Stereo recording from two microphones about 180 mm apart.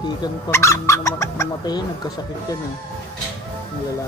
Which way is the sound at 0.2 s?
15° left (ahead or behind).